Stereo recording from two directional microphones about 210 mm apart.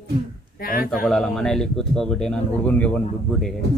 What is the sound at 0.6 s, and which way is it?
Speech, 45° left (ahead or behind).